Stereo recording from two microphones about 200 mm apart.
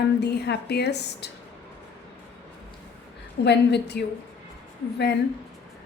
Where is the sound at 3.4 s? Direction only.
60° left (ahead or behind).